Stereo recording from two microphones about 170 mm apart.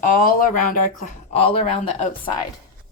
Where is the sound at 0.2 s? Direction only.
55° left (ahead or behind).